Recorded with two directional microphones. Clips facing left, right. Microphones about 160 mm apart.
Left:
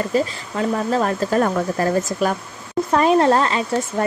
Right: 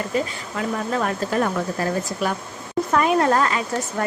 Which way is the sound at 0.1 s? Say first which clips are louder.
Left 4 dB; 35° left (ahead or behind).